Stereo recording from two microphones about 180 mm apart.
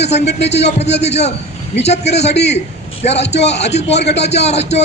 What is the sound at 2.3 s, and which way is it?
Speech, 70° left (ahead or behind).